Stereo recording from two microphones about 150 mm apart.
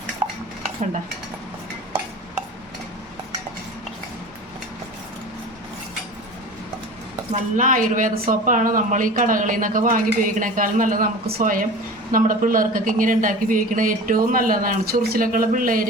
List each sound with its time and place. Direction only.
7.3 s speech: 60° right (ahead or behind); by 11.6 s 80° right
12.1 s speech: 65° right (ahead or behind)